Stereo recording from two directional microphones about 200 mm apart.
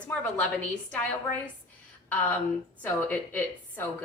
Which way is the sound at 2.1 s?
10° left (ahead or behind).